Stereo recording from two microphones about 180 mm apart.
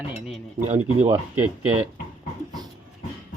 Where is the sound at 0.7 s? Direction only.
40° right (ahead or behind).